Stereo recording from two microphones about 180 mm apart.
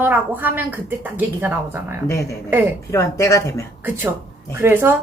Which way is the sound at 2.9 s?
15° left (ahead or behind).